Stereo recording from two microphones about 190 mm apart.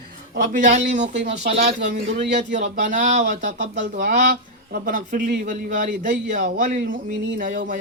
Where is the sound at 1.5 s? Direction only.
30° right (ahead or behind).